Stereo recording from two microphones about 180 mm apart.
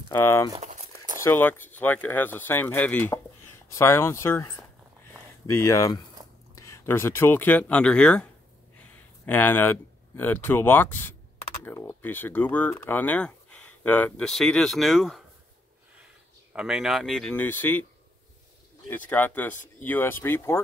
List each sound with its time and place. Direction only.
0.1 s speech: 15° left (ahead or behind)
0.6 s crumpling: 35° right (ahead or behind)
1.2 s speech: 10° left (ahead or behind)
16.5 s speech: 5° right (ahead or behind)
18.9 s speech: 10° left (ahead or behind)